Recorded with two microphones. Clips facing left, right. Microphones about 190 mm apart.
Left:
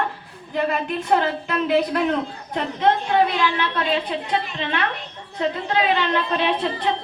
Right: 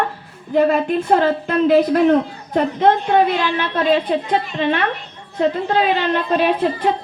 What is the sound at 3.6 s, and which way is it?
A woman's voice, 50° right (ahead or behind).